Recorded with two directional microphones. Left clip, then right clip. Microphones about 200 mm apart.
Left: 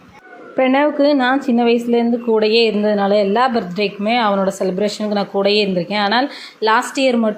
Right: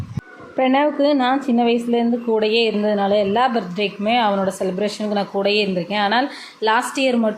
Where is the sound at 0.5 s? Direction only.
10° left (ahead or behind).